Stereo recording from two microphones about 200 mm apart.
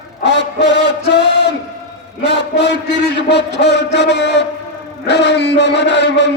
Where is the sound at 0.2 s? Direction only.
60° left (ahead or behind).